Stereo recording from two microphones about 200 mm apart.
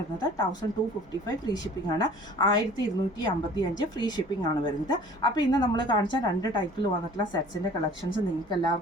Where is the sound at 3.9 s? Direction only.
20° left (ahead or behind).